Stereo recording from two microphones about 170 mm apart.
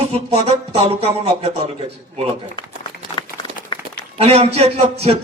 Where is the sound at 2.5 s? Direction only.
30° left (ahead or behind).